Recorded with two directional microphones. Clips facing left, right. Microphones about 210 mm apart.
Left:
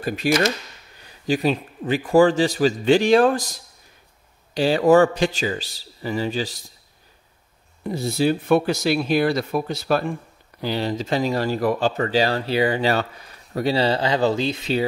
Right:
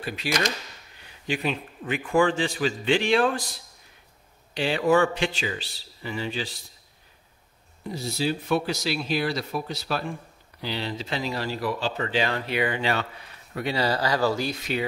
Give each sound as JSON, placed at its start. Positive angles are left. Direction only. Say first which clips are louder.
{"t": 0.0, "sound": "a man's voice", "louder": "left 7 dB", "side_deg": 45}
{"t": 7.8, "sound": "speech", "louder": "left 7 dB", "side_deg": 55}